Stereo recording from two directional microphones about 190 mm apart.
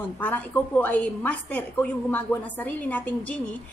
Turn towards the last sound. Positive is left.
turn(degrees=10)  # may be behind; listen again after turning